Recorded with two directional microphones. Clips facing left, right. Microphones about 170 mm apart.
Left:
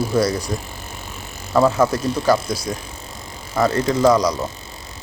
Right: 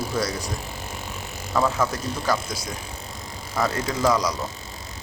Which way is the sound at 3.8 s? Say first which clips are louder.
Left 7 dB; 25° left (ahead or behind).